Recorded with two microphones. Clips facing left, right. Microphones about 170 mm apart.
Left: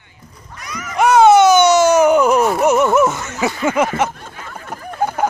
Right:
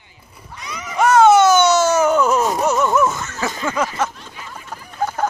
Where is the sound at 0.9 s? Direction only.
15° left (ahead or behind).